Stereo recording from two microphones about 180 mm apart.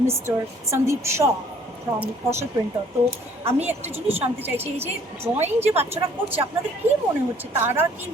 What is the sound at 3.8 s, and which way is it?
Speech, 35° right (ahead or behind).